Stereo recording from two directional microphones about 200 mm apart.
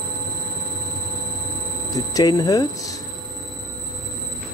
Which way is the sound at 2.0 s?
20° left (ahead or behind).